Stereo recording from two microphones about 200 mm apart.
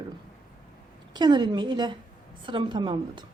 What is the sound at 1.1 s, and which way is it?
A woman's voice, 20° right (ahead or behind).